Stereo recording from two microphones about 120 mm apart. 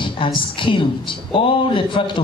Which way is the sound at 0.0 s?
45° left (ahead or behind).